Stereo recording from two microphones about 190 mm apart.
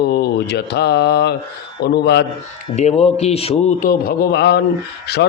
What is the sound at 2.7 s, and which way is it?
Speech, 30° left (ahead or behind).